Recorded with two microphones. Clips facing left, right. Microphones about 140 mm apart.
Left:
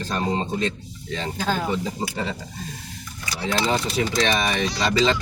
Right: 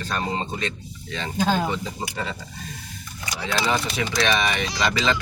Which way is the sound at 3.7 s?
35° left (ahead or behind).